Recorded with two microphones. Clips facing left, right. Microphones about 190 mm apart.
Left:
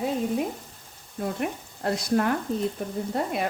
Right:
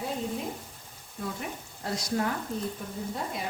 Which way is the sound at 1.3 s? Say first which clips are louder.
Left 8 dB; 60° left (ahead or behind).